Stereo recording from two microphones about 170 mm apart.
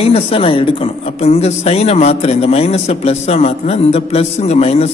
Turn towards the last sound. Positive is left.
turn(degrees=40)  # may be behind; listen again after turning